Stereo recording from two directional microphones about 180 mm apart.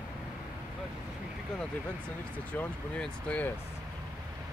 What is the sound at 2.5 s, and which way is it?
Speech, 10° left (ahead or behind).